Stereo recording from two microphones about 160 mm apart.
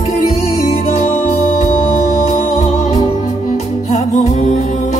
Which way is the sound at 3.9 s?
50° left (ahead or behind).